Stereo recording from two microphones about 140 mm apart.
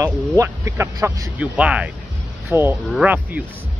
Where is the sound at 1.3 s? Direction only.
10° right (ahead or behind).